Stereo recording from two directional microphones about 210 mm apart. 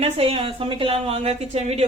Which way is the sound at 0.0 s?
30° right (ahead or behind).